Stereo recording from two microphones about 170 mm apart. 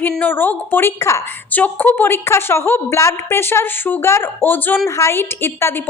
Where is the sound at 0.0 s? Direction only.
10° left (ahead or behind).